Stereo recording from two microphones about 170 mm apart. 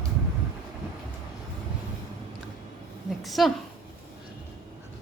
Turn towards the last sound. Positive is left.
turn(degrees=0)  # may be behind; listen again after turning